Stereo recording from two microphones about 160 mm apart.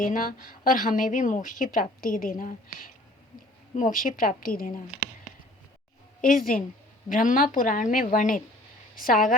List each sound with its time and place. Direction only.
0.0 s a woman's voice: 60° left (ahead or behind)
6.2 s a woman's voice: 65° left (ahead or behind)